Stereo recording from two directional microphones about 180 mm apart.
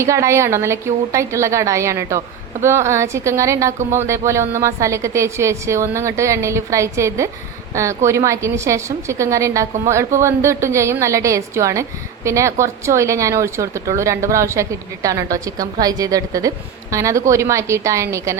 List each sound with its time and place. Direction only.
0.0 s a woman's voice: 15° right (ahead or behind)